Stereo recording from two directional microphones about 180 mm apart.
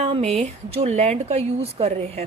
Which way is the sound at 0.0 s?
35° right (ahead or behind).